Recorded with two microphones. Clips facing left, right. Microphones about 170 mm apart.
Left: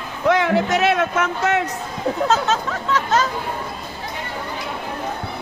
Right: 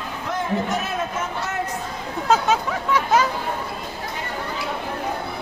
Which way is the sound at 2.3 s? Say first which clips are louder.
Right 5 dB; 10° right (ahead or behind).